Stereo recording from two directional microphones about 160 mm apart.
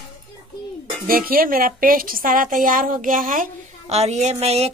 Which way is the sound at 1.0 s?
65° right (ahead or behind).